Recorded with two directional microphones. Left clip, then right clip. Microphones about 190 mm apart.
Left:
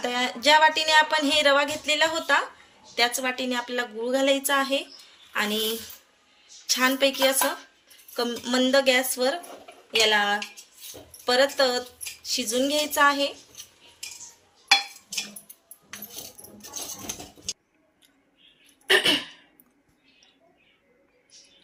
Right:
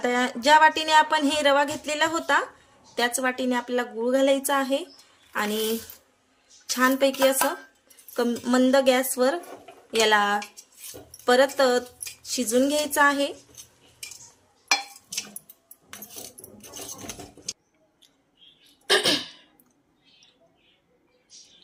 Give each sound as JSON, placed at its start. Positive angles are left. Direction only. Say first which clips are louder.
{"t": 0.0, "sound": "speech", "louder": "right 1 dB", "side_deg": -40}